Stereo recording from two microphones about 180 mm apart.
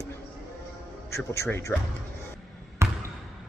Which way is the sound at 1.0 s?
15° left (ahead or behind).